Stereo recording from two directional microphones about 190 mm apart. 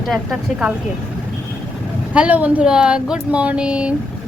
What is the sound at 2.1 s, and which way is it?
A woman's voice, 5° right (ahead or behind).